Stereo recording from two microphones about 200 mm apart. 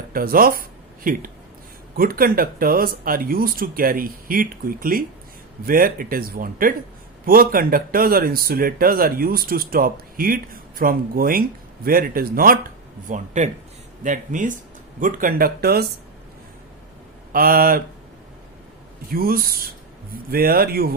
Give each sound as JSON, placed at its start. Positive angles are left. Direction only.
{"t": 0.1, "sound": "speech", "side_deg": -45}
{"t": 17.3, "sound": "speech", "side_deg": -45}
{"t": 19.1, "sound": "speech", "side_deg": -45}